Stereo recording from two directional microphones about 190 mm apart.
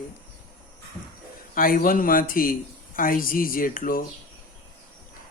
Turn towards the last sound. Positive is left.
turn(degrees=50)  # may be behind; listen again after turning